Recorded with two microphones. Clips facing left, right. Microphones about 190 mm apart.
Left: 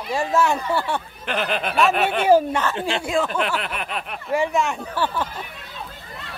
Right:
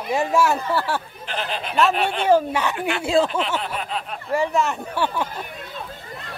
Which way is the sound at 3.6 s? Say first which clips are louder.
Right 1 dB; 70° left (ahead or behind).